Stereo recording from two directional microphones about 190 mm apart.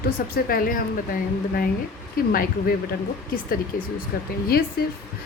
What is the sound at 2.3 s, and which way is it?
Speech, 50° left (ahead or behind).